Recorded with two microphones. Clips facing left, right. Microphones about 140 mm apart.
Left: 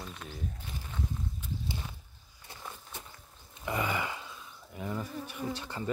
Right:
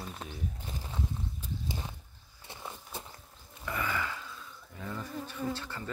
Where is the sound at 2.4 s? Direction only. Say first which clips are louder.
Right 2 dB; 20° right (ahead or behind).